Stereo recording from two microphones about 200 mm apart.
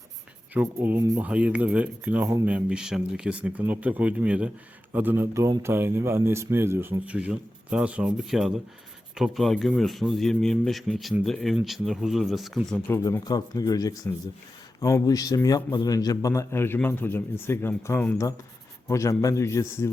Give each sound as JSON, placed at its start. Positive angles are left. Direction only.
{"t": 0.5, "sound": "a man's voice", "side_deg": -10}
{"t": 12.9, "sound": "a man's voice", "side_deg": 15}